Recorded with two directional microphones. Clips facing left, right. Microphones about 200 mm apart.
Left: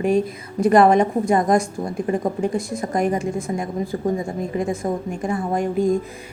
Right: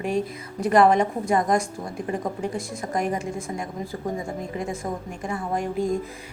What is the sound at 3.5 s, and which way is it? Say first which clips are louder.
Speech: left 6 dB; 30° left (ahead or behind).